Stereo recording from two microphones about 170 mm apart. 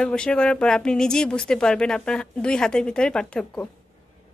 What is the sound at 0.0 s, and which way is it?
Speech, 5° left (ahead or behind).